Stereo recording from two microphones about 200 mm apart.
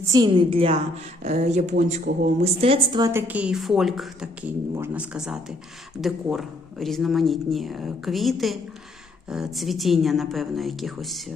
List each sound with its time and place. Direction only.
0.0 s a woman's voice: 20° right (ahead or behind); by 11.2 s centre (ahead or behind)